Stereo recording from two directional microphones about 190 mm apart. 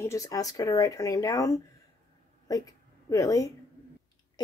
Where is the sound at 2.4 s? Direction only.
20° left (ahead or behind).